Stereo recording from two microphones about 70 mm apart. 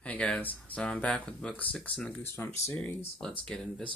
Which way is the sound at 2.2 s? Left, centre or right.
Left.